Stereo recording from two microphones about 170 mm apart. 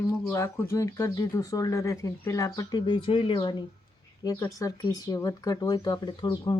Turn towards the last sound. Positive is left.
turn(degrees=25)  # may be behind; listen again after turning